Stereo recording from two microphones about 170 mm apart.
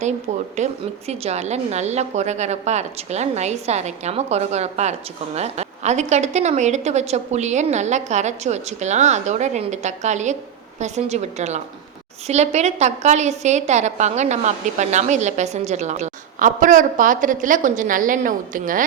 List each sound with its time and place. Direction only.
0.5 s a woman's voice: 40° right (ahead or behind)